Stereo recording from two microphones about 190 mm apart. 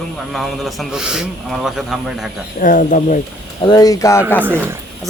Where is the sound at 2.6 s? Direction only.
45° left (ahead or behind).